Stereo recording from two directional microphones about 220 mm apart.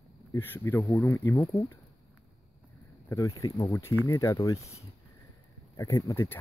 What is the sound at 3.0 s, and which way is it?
Speech, 15° left (ahead or behind).